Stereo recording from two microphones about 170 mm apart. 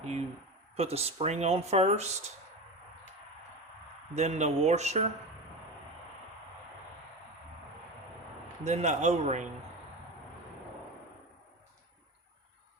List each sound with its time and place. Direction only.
0.0 s speech: 40° right (ahead or behind)
4.1 s speech: 40° right (ahead or behind)
8.6 s a man's voice: 45° right (ahead or behind)